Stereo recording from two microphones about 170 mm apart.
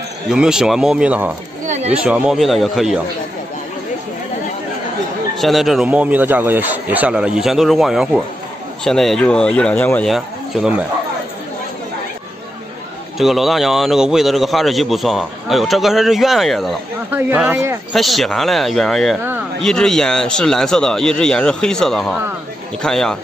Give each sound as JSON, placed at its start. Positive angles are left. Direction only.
{"t": 0.3, "sound": "speech", "side_deg": -5}
{"t": 1.7, "sound": "a sound", "side_deg": -40}
{"t": 2.0, "sound": "speech", "side_deg": -5}
{"t": 5.4, "sound": "speech", "side_deg": 0}
{"t": 10.0, "sound": "speech", "side_deg": 0}
{"t": 13.2, "sound": "speech", "side_deg": 0}